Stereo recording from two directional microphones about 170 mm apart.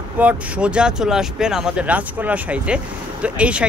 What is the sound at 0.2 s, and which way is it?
Speech, 5° right (ahead or behind).